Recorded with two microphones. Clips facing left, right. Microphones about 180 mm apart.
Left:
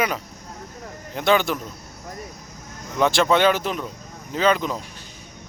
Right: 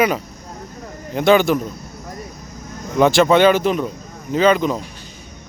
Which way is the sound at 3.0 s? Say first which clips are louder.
Right 6 dB; 10° right (ahead or behind).